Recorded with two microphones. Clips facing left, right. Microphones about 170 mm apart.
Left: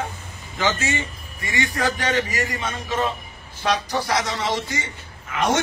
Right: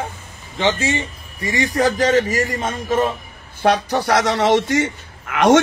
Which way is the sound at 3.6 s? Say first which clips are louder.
Right 6 dB; 60° right (ahead or behind).